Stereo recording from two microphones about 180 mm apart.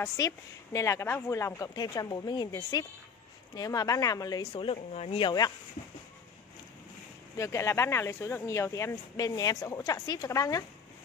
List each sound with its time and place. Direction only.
0.2 s speech: 20° left (ahead or behind); by 5.3 s 35° left (ahead or behind)
7.3 s speech: 15° left (ahead or behind)